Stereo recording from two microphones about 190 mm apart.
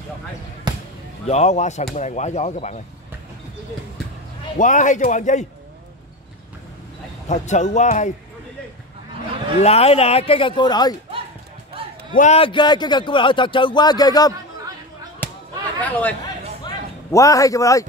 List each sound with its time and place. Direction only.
0.7 s basketball bounce: 25° right (ahead or behind)
1.2 s a man's voice: 35° left (ahead or behind)
4.6 s a man's voice: 40° left (ahead or behind)
7.2 s a man's voice: 40° left (ahead or behind)
9.6 s speech: 30° left (ahead or behind)
12.2 s speech: 35° left (ahead or behind)
15.2 s a sound: 10° left (ahead or behind)
15.8 s a man's voice: 10° left (ahead or behind)